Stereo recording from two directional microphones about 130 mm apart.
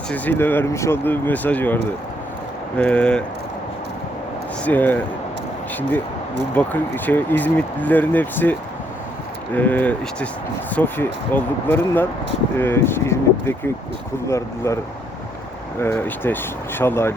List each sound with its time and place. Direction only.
0.1 s speech: 15° left (ahead or behind)
4.6 s speech: 15° left (ahead or behind)
6.5 s speech: 15° left (ahead or behind)
9.6 s speech: 15° left (ahead or behind)
15.8 s speech: 15° left (ahead or behind)